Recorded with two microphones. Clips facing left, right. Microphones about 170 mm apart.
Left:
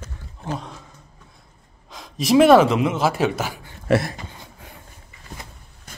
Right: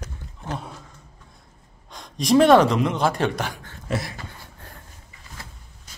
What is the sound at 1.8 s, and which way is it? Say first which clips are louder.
A man's voice: left 1 dB; centre (ahead or behind).